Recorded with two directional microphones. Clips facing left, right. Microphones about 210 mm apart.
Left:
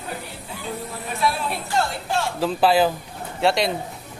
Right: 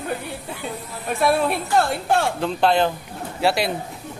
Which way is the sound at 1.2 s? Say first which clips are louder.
Right 6 dB; 55° right (ahead or behind).